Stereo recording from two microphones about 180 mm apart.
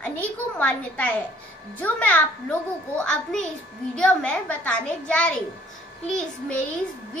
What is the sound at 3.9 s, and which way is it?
A woman's voice, 5° left (ahead or behind).